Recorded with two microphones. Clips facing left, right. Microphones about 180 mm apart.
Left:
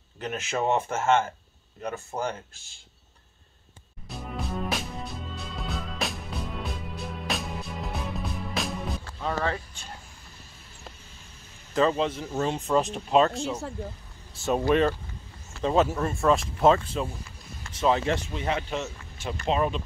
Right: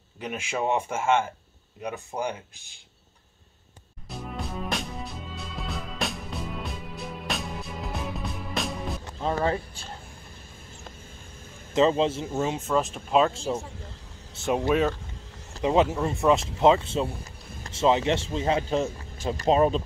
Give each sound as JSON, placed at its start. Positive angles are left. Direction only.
{"t": 0.2, "sound": "speech", "side_deg": -10}
{"t": 4.2, "sound": "music", "side_deg": 0}
{"t": 9.0, "sound": "speech", "side_deg": -25}
{"t": 11.7, "sound": "a man's voice", "side_deg": -25}
{"t": 12.4, "sound": "speech", "side_deg": -5}
{"t": 14.6, "sound": "speech", "side_deg": -5}
{"t": 15.6, "sound": "a man's voice", "side_deg": -15}